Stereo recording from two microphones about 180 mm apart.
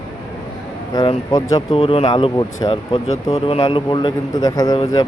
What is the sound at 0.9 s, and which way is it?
Speech, 25° left (ahead or behind).